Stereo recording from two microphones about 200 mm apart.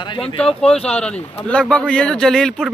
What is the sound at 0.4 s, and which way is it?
Speech, 5° left (ahead or behind).